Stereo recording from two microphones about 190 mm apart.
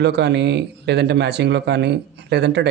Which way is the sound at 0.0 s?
65° right (ahead or behind).